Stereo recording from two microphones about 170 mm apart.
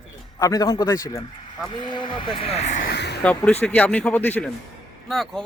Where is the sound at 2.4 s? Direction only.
40° left (ahead or behind).